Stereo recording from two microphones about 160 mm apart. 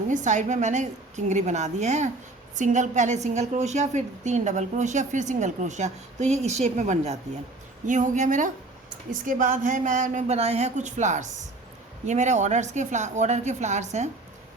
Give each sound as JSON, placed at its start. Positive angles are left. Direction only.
{"t": 0.1, "sound": "a woman's voice", "side_deg": -50}